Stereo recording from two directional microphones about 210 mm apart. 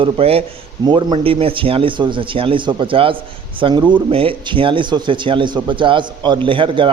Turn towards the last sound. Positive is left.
turn(degrees=-25)  # may be behind; listen again after turning